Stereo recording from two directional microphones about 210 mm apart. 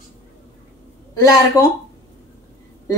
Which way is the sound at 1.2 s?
15° left (ahead or behind).